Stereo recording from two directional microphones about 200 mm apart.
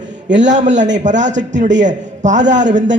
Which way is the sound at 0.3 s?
35° right (ahead or behind).